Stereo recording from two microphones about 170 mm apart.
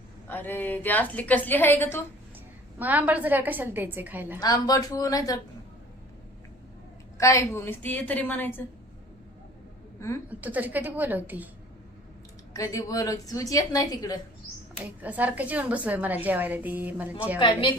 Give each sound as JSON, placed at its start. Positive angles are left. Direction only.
{"t": 0.3, "sound": "a woman's voice", "side_deg": 10}
{"t": 2.7, "sound": "a woman's voice", "side_deg": -10}
{"t": 4.4, "sound": "a woman's voice", "side_deg": 20}
{"t": 7.2, "sound": "a woman's voice", "side_deg": 15}
{"t": 10.2, "sound": "a woman's voice", "side_deg": -10}
{"t": 12.5, "sound": "a woman's voice", "side_deg": 20}
{"t": 14.8, "sound": "a woman's voice", "side_deg": -10}
{"t": 17.4, "sound": "a woman's voice", "side_deg": 30}